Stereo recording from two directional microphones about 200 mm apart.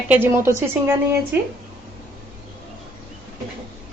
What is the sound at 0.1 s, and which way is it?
Speech, 10° right (ahead or behind).